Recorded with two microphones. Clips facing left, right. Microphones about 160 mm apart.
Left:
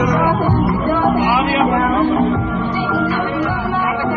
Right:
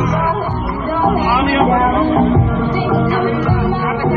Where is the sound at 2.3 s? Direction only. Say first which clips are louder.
Right 3 dB; 20° right (ahead or behind).